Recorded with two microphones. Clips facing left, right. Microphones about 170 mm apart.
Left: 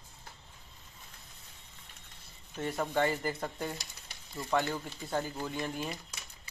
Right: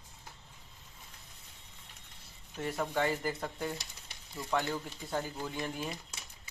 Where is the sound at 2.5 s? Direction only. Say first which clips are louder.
Left 2 dB; 5° right (ahead or behind).